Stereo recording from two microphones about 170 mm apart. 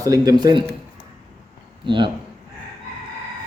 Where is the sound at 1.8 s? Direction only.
30° right (ahead or behind).